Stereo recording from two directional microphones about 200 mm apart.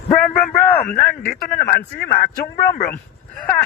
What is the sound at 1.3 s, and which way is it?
Speech, 45° left (ahead or behind).